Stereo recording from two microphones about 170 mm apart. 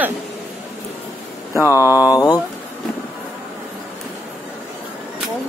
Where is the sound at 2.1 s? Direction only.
25° left (ahead or behind).